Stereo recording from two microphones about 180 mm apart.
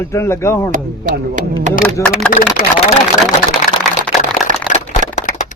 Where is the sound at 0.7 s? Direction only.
45° right (ahead or behind).